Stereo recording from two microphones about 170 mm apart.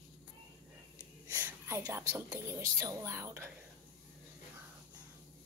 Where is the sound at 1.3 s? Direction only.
15° right (ahead or behind).